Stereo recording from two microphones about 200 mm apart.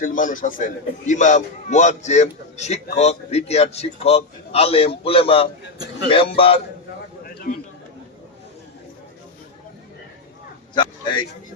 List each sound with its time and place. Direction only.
0.0 s a man's voice: 40° left (ahead or behind)
7.3 s a sound: 45° left (ahead or behind)
10.8 s a man's voice: 25° left (ahead or behind)